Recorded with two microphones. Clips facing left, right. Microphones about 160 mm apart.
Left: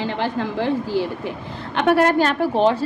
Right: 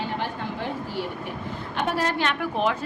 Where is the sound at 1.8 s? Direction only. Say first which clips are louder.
Left 10 dB; 65° left (ahead or behind).